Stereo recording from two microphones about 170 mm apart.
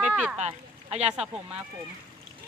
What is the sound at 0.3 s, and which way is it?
Speech, 40° right (ahead or behind).